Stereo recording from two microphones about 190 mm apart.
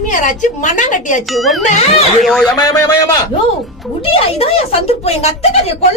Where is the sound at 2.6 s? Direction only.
20° left (ahead or behind).